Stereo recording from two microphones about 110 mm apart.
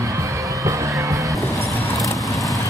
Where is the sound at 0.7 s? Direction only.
30° right (ahead or behind).